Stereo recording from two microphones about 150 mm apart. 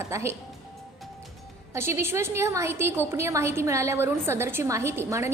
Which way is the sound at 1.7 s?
15° right (ahead or behind).